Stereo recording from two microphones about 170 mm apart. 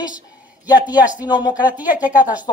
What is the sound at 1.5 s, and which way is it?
Speech, 10° right (ahead or behind).